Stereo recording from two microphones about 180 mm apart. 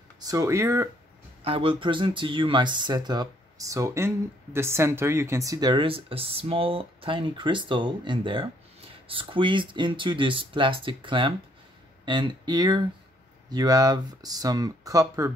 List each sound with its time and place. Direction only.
0.2 s speech: 20° right (ahead or behind)
1.4 s speech: 30° right (ahead or behind)